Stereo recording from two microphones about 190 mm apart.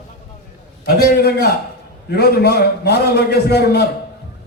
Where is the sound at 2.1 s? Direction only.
55° left (ahead or behind).